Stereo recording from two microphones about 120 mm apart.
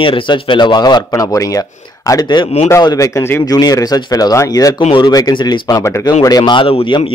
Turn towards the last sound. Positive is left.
turn(degrees=50)  # may be behind; listen again after turning